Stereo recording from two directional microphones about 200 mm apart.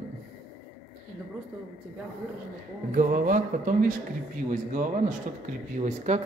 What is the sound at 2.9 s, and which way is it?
Speech, 40° right (ahead or behind).